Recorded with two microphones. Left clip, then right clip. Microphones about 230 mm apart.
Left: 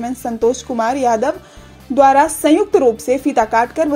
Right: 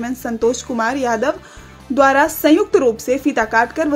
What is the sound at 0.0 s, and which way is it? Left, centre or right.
A woman's voice, centre.